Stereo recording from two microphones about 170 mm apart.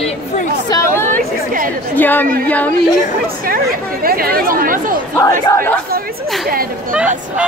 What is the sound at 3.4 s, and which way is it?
Speech, 60° right (ahead or behind).